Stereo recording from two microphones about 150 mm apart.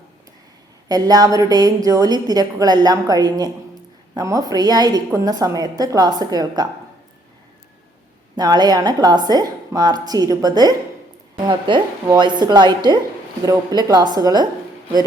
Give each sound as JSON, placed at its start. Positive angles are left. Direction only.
{"t": 0.9, "sound": "a woman's voice", "side_deg": -25}
{"t": 8.4, "sound": "a woman's voice", "side_deg": -25}